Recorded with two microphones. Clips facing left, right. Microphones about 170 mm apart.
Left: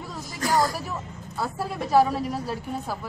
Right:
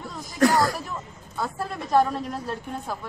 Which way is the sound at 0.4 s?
70° right (ahead or behind).